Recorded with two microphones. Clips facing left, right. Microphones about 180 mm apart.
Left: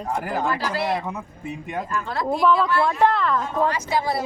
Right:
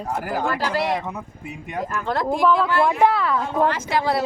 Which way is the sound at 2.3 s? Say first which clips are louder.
Even; 5° right (ahead or behind).